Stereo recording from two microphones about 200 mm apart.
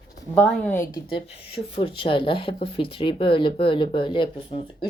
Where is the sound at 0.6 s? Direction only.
10° left (ahead or behind).